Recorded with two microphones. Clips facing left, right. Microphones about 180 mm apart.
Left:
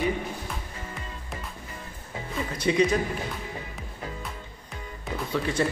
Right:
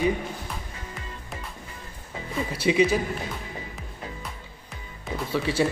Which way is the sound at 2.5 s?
10° right (ahead or behind).